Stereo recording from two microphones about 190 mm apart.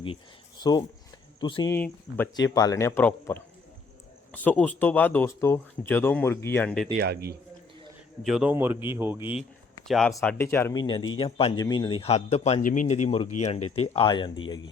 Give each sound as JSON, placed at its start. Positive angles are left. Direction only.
{"t": 0.6, "sound": "a man's voice", "side_deg": 20}
{"t": 1.7, "sound": "speech", "side_deg": 10}
{"t": 2.3, "sound": "speech", "side_deg": 20}
{"t": 7.0, "sound": "a man's voice", "side_deg": -55}
{"t": 8.2, "sound": "a man's voice", "side_deg": 0}
{"t": 9.4, "sound": "a sound", "side_deg": 0}
{"t": 10.2, "sound": "a man's voice", "side_deg": 10}